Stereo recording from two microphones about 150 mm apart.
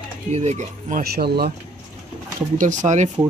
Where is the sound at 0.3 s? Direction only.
45° right (ahead or behind); by 1.5 s 90° right.